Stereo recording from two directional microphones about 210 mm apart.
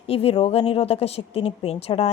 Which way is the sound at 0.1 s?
25° left (ahead or behind).